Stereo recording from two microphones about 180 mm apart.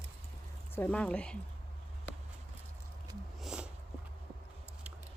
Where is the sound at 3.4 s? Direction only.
5° right (ahead or behind).